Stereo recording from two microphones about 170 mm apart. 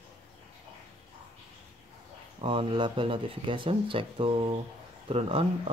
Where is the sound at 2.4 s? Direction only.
30° right (ahead or behind).